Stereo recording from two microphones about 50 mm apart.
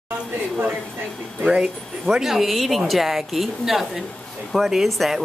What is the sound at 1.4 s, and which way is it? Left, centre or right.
Speech, centre.